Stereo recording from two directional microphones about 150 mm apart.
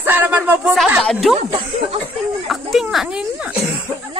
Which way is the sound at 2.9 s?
5° right (ahead or behind).